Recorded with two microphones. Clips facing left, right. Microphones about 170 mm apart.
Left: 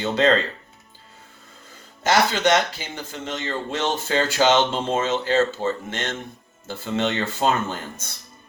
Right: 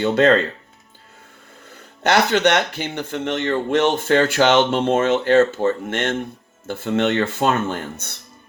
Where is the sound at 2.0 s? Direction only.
65° right (ahead or behind).